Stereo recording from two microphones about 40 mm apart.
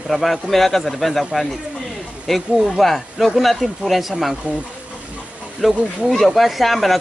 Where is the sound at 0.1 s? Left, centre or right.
Centre.